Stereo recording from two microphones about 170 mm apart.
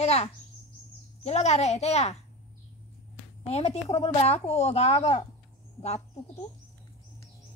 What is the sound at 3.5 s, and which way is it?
A woman's voice, 35° left (ahead or behind).